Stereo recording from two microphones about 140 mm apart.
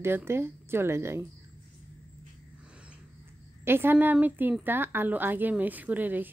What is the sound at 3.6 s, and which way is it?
A woman's voice, 15° right (ahead or behind).